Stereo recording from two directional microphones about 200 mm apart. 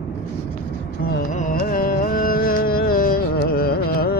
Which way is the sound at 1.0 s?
45° left (ahead or behind).